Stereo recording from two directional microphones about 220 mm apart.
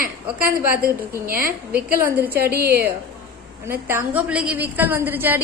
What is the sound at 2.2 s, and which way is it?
Speech, 45° right (ahead or behind).